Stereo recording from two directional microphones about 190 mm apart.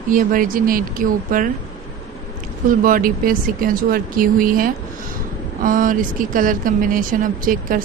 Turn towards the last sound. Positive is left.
turn(degrees=-45)  # may be behind; listen again after turning